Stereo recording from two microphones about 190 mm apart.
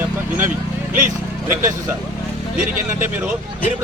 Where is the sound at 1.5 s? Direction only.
15° right (ahead or behind).